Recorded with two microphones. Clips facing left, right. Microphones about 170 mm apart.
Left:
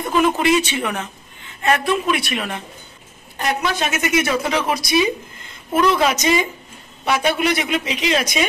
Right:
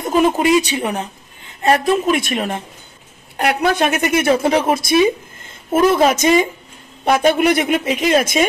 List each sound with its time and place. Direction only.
0.0 s a woman's voice: 45° right (ahead or behind)
3.3 s a woman's voice: 60° right (ahead or behind)